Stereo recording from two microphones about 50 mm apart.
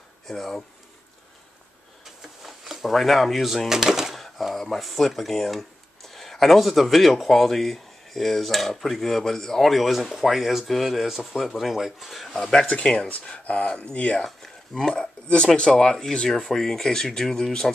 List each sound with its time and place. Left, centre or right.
0.3 s speech: centre
2.0 s a sound: centre
4.2 s speech: centre
12.4 s speech: centre
13.1 s speech: left
14.2 s speech: centre